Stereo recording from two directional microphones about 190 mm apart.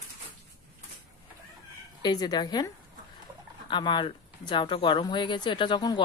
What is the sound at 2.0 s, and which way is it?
A woman's voice, 20° left (ahead or behind).